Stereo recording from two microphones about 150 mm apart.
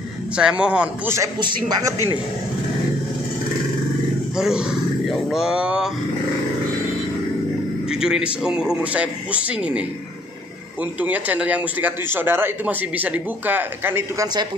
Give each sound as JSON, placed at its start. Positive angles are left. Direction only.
{"t": 0.4, "sound": "a man's voice", "side_deg": -5}
{"t": 1.4, "sound": "speech", "side_deg": -30}
{"t": 4.4, "sound": "speech", "side_deg": -5}
{"t": 7.9, "sound": "a man's voice", "side_deg": -5}
{"t": 14.2, "sound": "speech", "side_deg": -30}